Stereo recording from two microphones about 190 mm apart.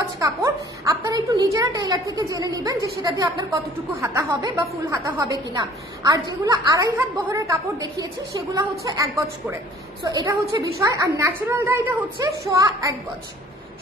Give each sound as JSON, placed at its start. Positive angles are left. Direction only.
{"t": 0.2, "sound": "a woman's voice", "side_deg": -15}